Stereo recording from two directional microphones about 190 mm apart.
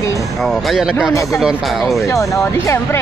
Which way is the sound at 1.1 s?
15° left (ahead or behind).